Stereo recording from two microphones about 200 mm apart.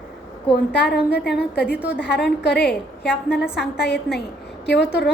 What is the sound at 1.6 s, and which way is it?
Speech, 5° right (ahead or behind).